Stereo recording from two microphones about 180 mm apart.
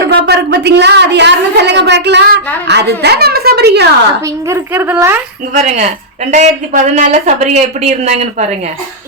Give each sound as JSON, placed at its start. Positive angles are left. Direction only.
{"t": 0.0, "sound": "a woman's voice", "side_deg": -65}
{"t": 4.4, "sound": "speech", "side_deg": -10}
{"t": 5.5, "sound": "speech", "side_deg": -40}